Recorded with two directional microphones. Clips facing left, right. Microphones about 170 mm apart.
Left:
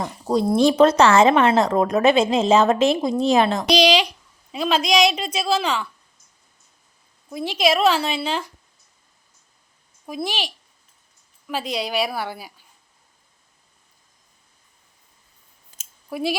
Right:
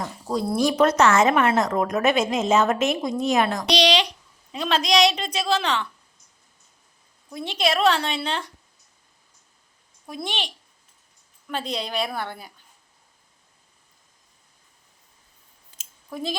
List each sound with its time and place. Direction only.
0.0 s speech: 20° left (ahead or behind)
3.7 s a sound: 10° left (ahead or behind)
4.5 s a woman's voice: 10° left (ahead or behind)
7.3 s a woman's voice: 10° left (ahead or behind)
10.1 s a woman's voice: 5° left (ahead or behind)
15.7 s a sound: 45° left (ahead or behind)
16.0 s speech: 10° left (ahead or behind)